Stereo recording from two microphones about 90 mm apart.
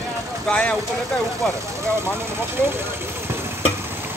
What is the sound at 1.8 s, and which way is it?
Speech, 30° right (ahead or behind).